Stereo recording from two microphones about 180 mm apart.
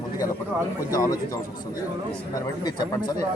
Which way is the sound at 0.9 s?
20° left (ahead or behind).